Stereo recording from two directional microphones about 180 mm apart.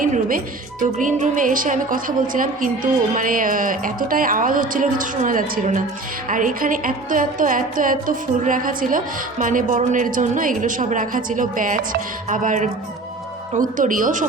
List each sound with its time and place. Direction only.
0.0 s music: 50° right (ahead or behind)